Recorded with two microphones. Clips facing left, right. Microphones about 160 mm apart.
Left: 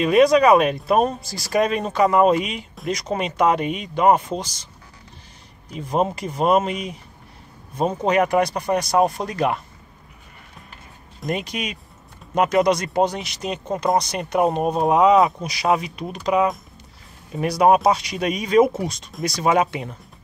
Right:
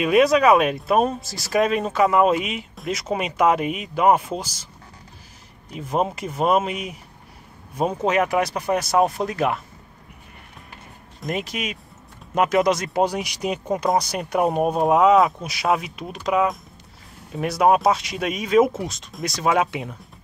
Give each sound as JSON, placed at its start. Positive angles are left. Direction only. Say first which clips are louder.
{"t": 0.0, "sound": "speech", "louder": "left 2 dB", "side_deg": -5}
{"t": 5.7, "sound": "speech", "louder": "left 2 dB", "side_deg": -5}
{"t": 11.1, "sound": "speech", "louder": "left 1 dB", "side_deg": 0}